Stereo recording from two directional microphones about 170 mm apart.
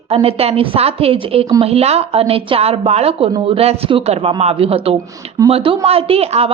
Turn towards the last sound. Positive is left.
turn(degrees=-35)  # may be behind; listen again after turning